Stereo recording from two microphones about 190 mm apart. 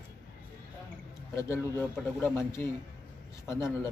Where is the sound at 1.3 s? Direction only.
15° left (ahead or behind).